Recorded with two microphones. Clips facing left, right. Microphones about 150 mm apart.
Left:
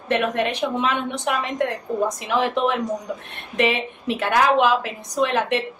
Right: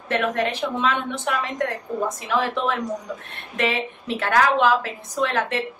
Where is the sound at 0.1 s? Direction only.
20° left (ahead or behind).